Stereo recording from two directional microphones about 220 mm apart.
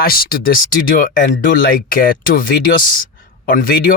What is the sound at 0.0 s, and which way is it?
Speech, 40° left (ahead or behind).